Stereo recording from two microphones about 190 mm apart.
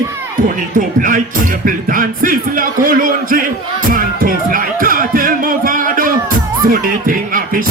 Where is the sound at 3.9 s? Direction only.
45° right (ahead or behind).